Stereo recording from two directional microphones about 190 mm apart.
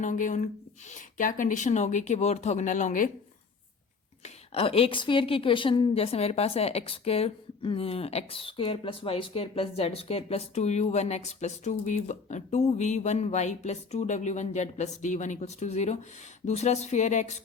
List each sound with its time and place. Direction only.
0.0 s a woman's voice: 40° left (ahead or behind)
4.2 s a woman's voice: 30° left (ahead or behind)